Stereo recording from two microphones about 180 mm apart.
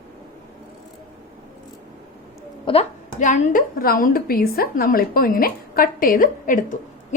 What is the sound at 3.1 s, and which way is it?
A woman's voice, 45° left (ahead or behind).